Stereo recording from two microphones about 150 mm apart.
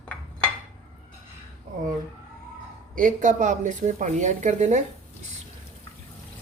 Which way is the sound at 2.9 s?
60° right (ahead or behind).